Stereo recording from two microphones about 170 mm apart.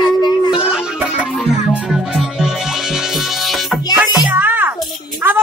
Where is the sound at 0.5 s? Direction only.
5° right (ahead or behind).